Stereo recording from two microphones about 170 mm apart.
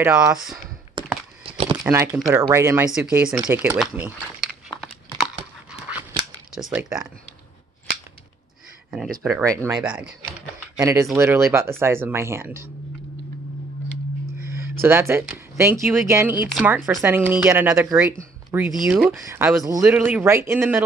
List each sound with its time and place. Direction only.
0.0 s speech: 5° right (ahead or behind)
1.0 s a sound: 30° right (ahead or behind)
1.4 s crumpling: 35° right (ahead or behind)
1.8 s speech: 15° right (ahead or behind)
2.9 s speech: 5° right (ahead or behind)
4.4 s crumpling: centre (ahead or behind)
6.5 s speech: 5° right (ahead or behind)
9.4 s speech: 20° right (ahead or behind)
9.7 s speech: 5° right (ahead or behind)
10.8 s speech: 15° right (ahead or behind)
14.4 s a sound: 15° right (ahead or behind)
15.9 s speech: 15° right (ahead or behind)